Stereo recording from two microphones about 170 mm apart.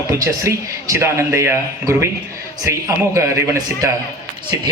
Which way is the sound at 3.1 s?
15° right (ahead or behind).